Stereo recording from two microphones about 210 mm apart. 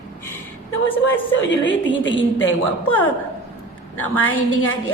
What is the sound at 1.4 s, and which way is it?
A woman's voice, 60° left (ahead or behind).